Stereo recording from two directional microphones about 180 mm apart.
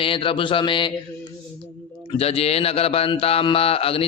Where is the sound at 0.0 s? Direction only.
30° left (ahead or behind).